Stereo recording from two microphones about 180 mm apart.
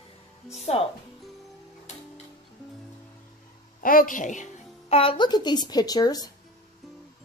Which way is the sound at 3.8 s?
50° left (ahead or behind).